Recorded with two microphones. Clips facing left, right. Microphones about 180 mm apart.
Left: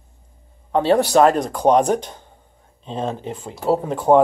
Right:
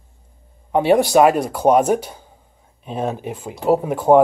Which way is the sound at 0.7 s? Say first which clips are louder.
Right 1 dB; 10° right (ahead or behind).